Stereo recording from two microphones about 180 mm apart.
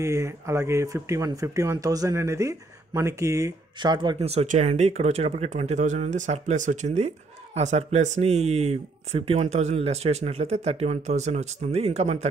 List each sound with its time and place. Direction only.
0.0 s speech: 15° right (ahead or behind); by 12.3 s 35° right (ahead or behind)